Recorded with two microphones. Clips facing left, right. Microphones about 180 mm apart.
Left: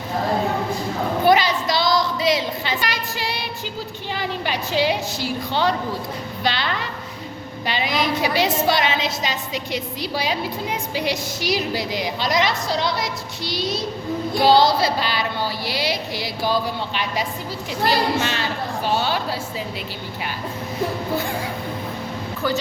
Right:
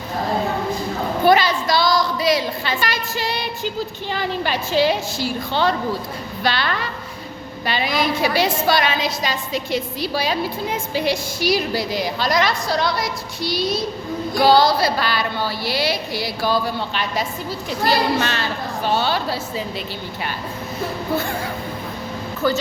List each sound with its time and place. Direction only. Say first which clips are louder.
1.2 s a sound: right 2 dB; 15° left (ahead or behind)
4.1 s a woman's voice: right 2 dB; 15° left (ahead or behind)
22.4 s speech: right 3 dB; 10° left (ahead or behind)